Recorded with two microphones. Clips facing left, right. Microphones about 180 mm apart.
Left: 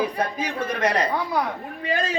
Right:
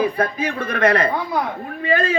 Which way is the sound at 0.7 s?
55° right (ahead or behind).